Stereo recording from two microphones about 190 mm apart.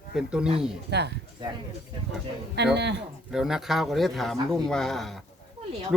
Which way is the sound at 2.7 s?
65° right (ahead or behind).